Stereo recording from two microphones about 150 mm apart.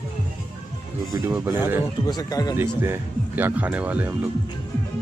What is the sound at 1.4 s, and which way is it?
Speech, 15° right (ahead or behind).